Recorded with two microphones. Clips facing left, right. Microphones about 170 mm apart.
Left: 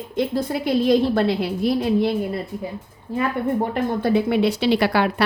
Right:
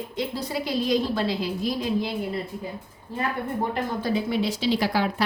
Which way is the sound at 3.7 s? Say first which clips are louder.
Left 6 dB; 60° left (ahead or behind).